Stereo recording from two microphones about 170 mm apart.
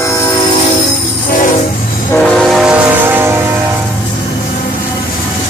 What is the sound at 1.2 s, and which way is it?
Train, 50° left (ahead or behind).